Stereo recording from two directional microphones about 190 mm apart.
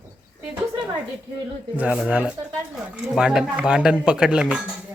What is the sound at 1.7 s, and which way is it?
Speech, 5° right (ahead or behind).